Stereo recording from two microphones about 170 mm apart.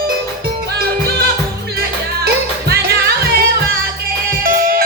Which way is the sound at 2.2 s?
65° right (ahead or behind).